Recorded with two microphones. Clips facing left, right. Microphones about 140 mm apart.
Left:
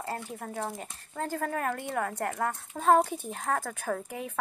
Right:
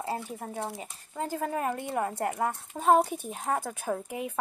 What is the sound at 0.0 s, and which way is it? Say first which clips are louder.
A woman's voice: right 2 dB; 10° right (ahead or behind).